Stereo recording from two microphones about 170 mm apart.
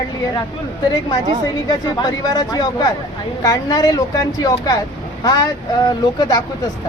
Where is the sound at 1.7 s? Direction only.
25° left (ahead or behind).